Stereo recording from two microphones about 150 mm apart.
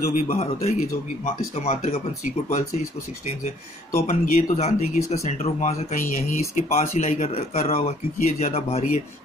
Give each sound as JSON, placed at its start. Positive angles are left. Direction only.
{"t": 0.0, "sound": "speech", "side_deg": 65}
{"t": 0.4, "sound": "speech", "side_deg": 45}
{"t": 4.1, "sound": "speech", "side_deg": 50}
{"t": 6.5, "sound": "speech", "side_deg": 50}
{"t": 8.2, "sound": "speech", "side_deg": 55}